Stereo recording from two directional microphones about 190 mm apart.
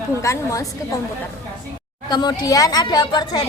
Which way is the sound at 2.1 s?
20° left (ahead or behind).